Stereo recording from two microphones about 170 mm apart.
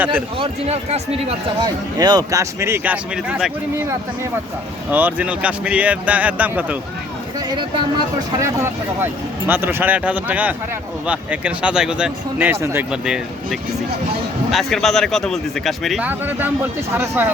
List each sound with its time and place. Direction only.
0.1 s speech: 35° right (ahead or behind)
1.6 s speech: 25° right (ahead or behind)
7.3 s speech: 20° right (ahead or behind)
12.9 s a man's voice: 5° right (ahead or behind)
16.0 s speech: 10° right (ahead or behind)